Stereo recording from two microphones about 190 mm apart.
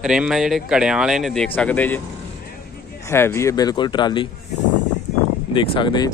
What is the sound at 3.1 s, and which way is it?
Speech, 15° left (ahead or behind).